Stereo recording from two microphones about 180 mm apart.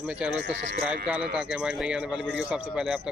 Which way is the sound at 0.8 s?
5° right (ahead or behind).